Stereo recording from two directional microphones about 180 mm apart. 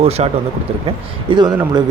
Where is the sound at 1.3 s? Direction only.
25° right (ahead or behind).